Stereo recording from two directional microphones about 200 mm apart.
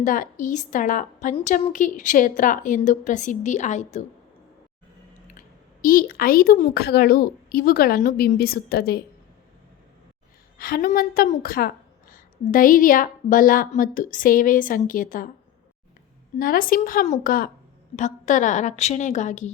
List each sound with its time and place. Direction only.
0.0 s a woman's voice: 40° left (ahead or behind)
5.8 s a woman's voice: 45° left (ahead or behind)
10.6 s a woman's voice: 45° left (ahead or behind)
16.4 s a woman's voice: 45° left (ahead or behind)